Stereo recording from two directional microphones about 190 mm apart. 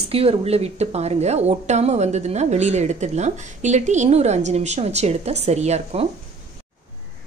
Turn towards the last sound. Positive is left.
turn(degrees=-35)  # may be behind; listen again after turning